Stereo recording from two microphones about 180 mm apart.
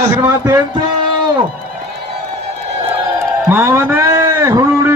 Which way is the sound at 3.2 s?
15° right (ahead or behind).